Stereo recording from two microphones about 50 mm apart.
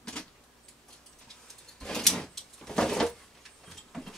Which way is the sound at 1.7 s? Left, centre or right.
Centre.